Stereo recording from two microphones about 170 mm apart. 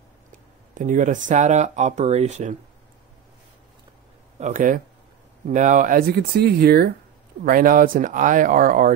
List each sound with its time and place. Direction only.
0.7 s speech: 50° right (ahead or behind)
4.4 s speech: 50° right (ahead or behind); by 6.9 s 65° right (ahead or behind)
7.4 s speech: 55° right (ahead or behind)